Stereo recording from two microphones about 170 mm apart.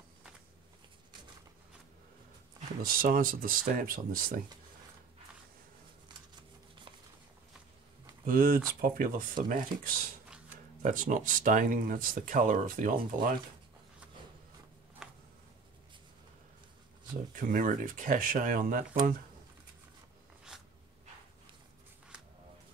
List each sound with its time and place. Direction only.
2.8 s speech: 55° right (ahead or behind)
8.3 s speech: 55° right (ahead or behind)
15.0 s a sound: 5° right (ahead or behind)
17.3 s speech: 50° right (ahead or behind)